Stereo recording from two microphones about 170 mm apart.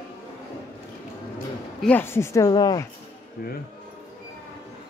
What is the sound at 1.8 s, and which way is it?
Speech, 10° left (ahead or behind).